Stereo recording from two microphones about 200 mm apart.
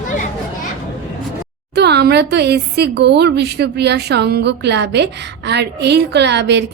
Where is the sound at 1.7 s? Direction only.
55° right (ahead or behind).